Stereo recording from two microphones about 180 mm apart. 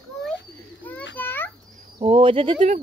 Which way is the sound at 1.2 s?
10° left (ahead or behind).